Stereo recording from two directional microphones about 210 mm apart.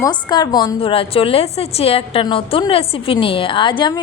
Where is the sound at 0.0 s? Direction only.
20° left (ahead or behind).